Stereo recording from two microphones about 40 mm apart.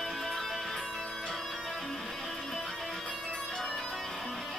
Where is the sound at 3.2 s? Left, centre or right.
Centre.